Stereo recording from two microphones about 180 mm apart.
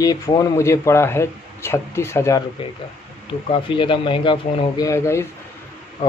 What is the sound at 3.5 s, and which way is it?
A man's voice, 30° left (ahead or behind).